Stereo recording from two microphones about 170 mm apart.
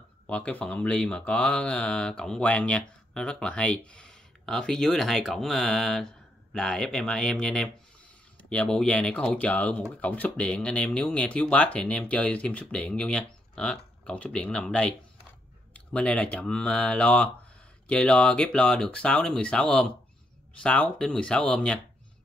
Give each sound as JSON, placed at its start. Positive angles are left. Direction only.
{"t": 0.3, "sound": "speech", "side_deg": 10}